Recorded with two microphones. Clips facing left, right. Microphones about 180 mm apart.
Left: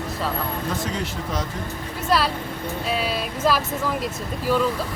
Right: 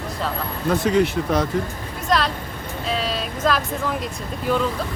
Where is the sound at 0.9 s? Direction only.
60° right (ahead or behind).